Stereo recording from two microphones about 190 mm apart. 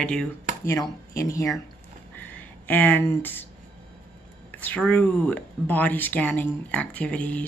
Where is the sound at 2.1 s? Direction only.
10° left (ahead or behind).